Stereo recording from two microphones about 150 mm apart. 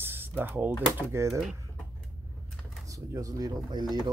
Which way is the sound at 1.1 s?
20° right (ahead or behind).